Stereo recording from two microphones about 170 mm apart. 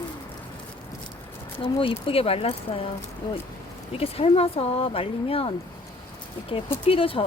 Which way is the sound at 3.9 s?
35° left (ahead or behind).